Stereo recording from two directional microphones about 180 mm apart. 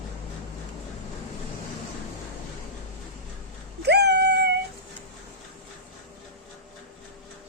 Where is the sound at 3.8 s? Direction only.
70° right (ahead or behind).